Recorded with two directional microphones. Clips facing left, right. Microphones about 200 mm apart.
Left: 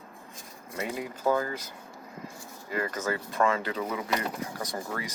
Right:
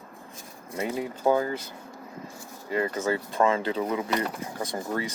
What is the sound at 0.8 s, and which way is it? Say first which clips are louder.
Speech: right 4 dB; 25° right (ahead or behind).